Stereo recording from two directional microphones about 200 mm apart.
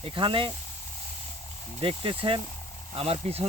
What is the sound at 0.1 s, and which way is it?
Speech, 25° right (ahead or behind).